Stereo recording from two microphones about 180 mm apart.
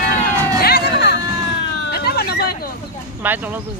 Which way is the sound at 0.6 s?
65° left (ahead or behind).